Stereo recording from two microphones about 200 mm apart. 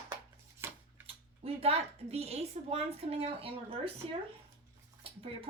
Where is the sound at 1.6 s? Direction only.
30° right (ahead or behind).